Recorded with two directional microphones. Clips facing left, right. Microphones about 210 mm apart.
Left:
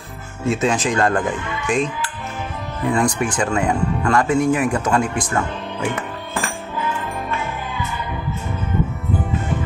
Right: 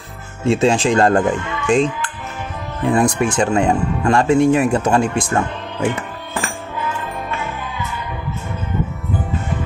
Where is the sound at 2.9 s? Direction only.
25° right (ahead or behind).